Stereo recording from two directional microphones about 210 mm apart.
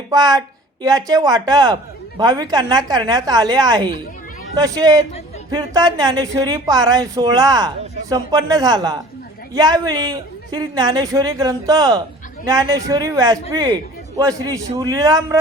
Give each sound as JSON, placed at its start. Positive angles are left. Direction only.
{"t": 0.1, "sound": "a man's voice", "side_deg": -15}